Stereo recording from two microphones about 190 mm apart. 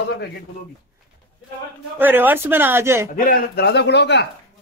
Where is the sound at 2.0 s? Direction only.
10° right (ahead or behind).